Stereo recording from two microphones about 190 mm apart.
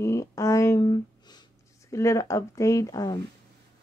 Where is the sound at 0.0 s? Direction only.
15° left (ahead or behind).